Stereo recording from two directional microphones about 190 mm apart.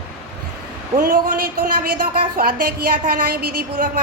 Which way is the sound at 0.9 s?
45° right (ahead or behind).